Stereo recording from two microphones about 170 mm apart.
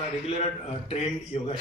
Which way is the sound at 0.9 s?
35° left (ahead or behind).